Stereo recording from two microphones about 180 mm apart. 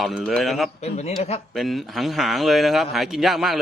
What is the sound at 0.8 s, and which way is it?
Speech, 40° left (ahead or behind).